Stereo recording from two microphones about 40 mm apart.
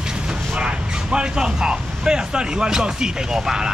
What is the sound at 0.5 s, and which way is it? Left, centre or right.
Speech, right.